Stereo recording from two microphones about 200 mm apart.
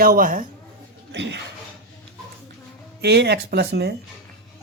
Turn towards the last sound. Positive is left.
turn(degrees=-55)  # may be behind; listen again after turning